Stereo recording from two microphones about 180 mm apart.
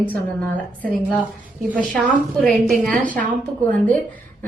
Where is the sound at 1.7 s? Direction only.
Centre (ahead or behind).